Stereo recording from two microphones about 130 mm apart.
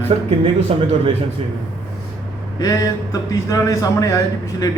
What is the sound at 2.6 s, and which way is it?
A man's voice, 30° left (ahead or behind).